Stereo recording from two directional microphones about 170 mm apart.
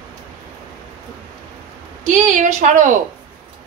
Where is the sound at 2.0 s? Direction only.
50° right (ahead or behind).